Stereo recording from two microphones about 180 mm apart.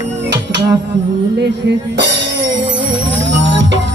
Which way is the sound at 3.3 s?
85° right.